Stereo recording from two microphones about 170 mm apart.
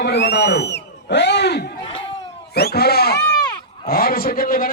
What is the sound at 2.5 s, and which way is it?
Speech, 70° left (ahead or behind).